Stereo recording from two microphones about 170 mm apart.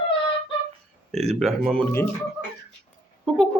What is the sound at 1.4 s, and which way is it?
Speech, 5° left (ahead or behind).